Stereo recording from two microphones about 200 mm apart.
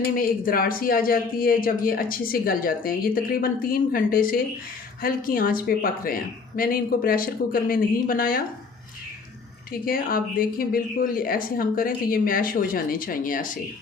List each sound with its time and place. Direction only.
0.2 s a man's voice: 45° left (ahead or behind)
9.7 s a man's voice: 45° left (ahead or behind)